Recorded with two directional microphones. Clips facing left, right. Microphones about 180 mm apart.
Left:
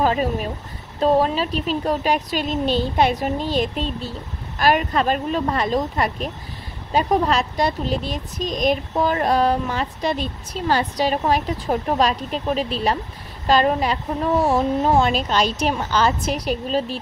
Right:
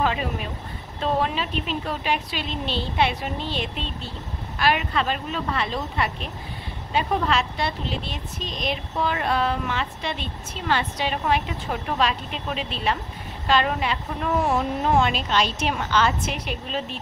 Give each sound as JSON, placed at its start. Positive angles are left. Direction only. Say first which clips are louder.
{"t": 0.0, "sound": "speech", "louder": "left 5 dB", "side_deg": 40}